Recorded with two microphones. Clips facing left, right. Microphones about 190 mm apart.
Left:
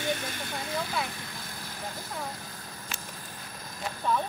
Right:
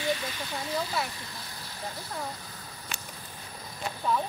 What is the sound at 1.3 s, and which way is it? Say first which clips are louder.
Vehicle: left 2 dB; 50° left (ahead or behind).